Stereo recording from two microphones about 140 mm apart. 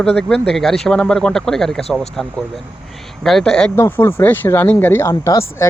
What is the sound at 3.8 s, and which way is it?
Speech, 15° left (ahead or behind).